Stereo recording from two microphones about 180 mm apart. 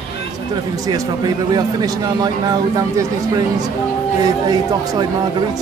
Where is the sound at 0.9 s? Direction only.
20° right (ahead or behind).